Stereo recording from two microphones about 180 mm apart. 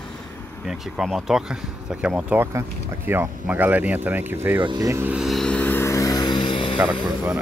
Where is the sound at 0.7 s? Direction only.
Centre (ahead or behind).